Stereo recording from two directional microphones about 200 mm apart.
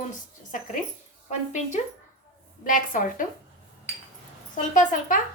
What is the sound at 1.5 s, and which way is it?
A woman's voice, 35° left (ahead or behind).